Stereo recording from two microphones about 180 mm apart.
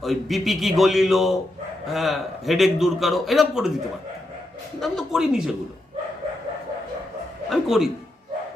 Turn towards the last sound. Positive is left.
turn(degrees=0)  # may be behind; listen again after turning